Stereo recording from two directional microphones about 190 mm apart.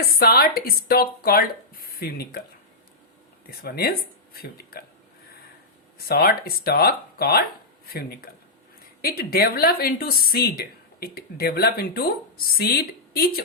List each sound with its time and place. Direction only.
0.0 s speech: 55° left (ahead or behind)
3.6 s speech: 55° left (ahead or behind)
6.1 s speech: 55° left (ahead or behind)
9.0 s speech: 55° left (ahead or behind)